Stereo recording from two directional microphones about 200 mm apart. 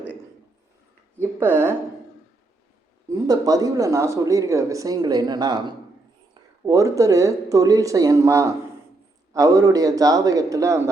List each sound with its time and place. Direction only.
1.2 s speech: 10° right (ahead or behind)
3.2 s speech: 20° right (ahead or behind)